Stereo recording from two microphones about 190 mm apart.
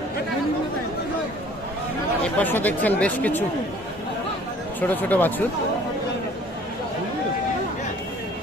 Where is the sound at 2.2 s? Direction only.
10° left (ahead or behind).